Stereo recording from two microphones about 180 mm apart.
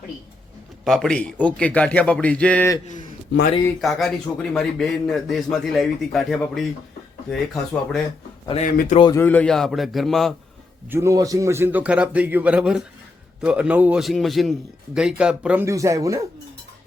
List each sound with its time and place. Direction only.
0.9 s a man's voice: 5° left (ahead or behind)
3.8 s a man's voice: centre (ahead or behind)
8.6 s speech: 45° left (ahead or behind)
9.0 s speech: 25° left (ahead or behind)
9.2 s a man's voice: 10° left (ahead or behind)
10.8 s a man's voice: 15° right (ahead or behind)
15.6 s a man's voice: 15° right (ahead or behind)